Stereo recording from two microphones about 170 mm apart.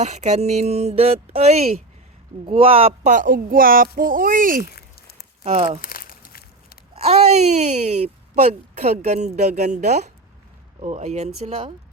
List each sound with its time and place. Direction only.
0.0 s speech: 40° right (ahead or behind)
3.1 s a woman's voice: 50° right (ahead or behind)
4.7 s a sound: 65° left (ahead or behind)
5.4 s speech: 35° right (ahead or behind)
5.8 s a sound: 55° left (ahead or behind)
6.9 s speech: 35° right (ahead or behind)